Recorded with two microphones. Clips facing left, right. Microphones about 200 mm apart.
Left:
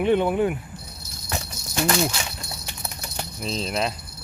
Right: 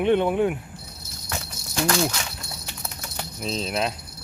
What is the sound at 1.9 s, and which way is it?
Speech, 10° left (ahead or behind).